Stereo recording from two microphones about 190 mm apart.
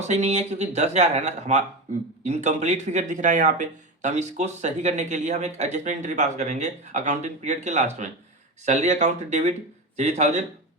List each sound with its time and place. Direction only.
0.0 s speech: 35° right (ahead or behind)